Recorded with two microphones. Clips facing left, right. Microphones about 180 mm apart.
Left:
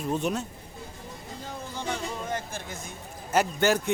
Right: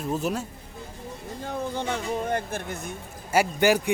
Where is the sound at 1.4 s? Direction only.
60° right (ahead or behind).